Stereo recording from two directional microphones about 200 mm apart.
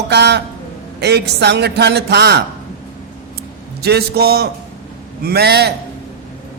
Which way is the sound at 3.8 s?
50° right (ahead or behind).